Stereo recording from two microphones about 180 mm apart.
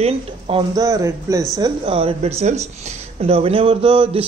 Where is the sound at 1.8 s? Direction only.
30° right (ahead or behind).